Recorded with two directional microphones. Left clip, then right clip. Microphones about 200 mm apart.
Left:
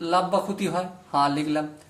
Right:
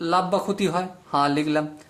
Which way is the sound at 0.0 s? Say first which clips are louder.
Right 1 dB; 45° right (ahead or behind).